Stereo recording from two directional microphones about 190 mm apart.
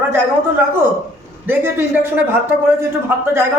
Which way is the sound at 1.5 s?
10° right (ahead or behind).